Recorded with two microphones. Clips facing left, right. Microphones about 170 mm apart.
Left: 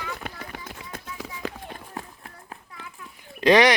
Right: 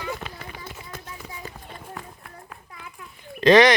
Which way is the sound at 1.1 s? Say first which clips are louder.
Left 5 dB; 90° left.